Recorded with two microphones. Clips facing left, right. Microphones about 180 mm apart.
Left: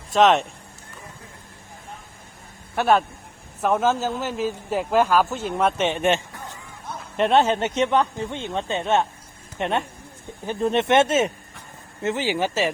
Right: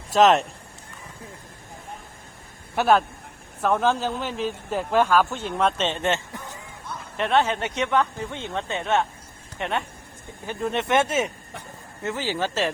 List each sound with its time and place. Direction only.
0.1 s speech: centre (ahead or behind)
2.7 s speech: centre (ahead or behind); by 6.2 s 15° left (ahead or behind)
7.2 s speech: 30° left (ahead or behind); by 12.7 s 10° left (ahead or behind)